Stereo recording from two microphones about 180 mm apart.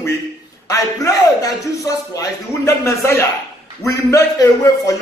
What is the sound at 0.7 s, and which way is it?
Speech, 20° left (ahead or behind).